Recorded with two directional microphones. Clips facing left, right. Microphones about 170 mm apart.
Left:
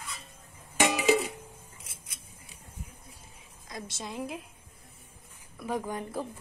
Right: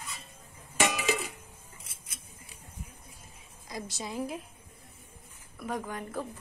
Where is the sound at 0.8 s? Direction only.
20° left (ahead or behind).